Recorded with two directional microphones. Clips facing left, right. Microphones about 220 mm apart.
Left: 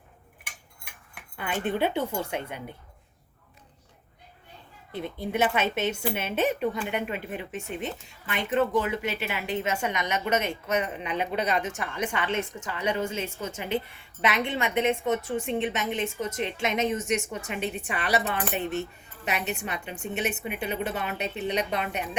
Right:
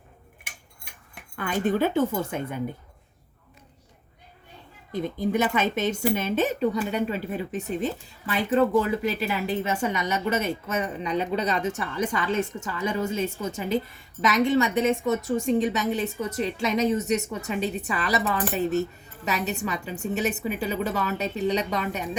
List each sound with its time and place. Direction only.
1.4 s speech: 40° right (ahead or behind)
4.9 s a woman's voice: 40° right (ahead or behind)